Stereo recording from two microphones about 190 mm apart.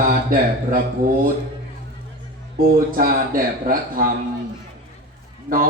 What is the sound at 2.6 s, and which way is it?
A man's voice, 50° right (ahead or behind).